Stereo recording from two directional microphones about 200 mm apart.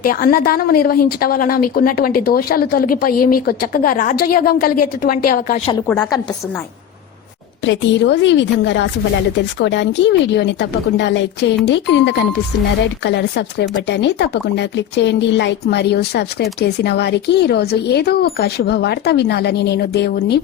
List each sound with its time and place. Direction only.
0.0 s a woman's voice: 45° left (ahead or behind)
5.9 s a woman's voice: 5° left (ahead or behind)
7.6 s speech: 65° left (ahead or behind)